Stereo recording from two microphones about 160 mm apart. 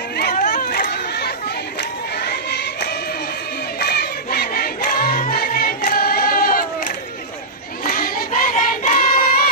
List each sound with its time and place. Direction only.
0.1 s a sound: 75° left (ahead or behind)
0.5 s chatter: 60° left (ahead or behind); by 1.3 s 80° left
1.8 s crowd: 85° left
3.8 s music: 80° left; by 6.6 s 60° left (ahead or behind)
7.9 s a sound: 60° left (ahead or behind)
8.8 s singing: 50° left (ahead or behind)